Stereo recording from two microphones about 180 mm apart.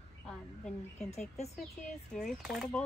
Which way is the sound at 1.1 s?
35° left (ahead or behind).